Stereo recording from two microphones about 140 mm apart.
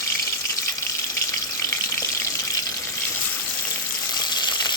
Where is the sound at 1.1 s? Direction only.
20° left (ahead or behind).